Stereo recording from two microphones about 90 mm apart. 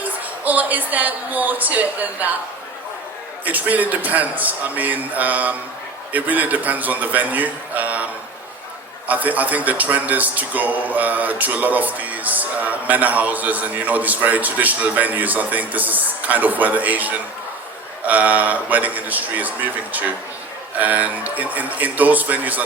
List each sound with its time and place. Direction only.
0.0 s a woman's voice: 20° right (ahead or behind)
3.4 s a man's voice: 20° right (ahead or behind)
9.0 s a man's voice: 20° right (ahead or behind)